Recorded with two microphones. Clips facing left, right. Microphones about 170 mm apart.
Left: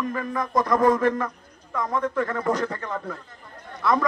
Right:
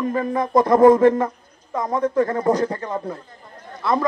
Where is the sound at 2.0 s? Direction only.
35° right (ahead or behind).